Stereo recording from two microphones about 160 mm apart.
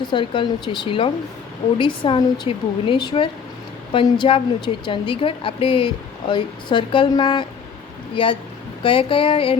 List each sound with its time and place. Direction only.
0.1 s a woman's voice: 30° left (ahead or behind)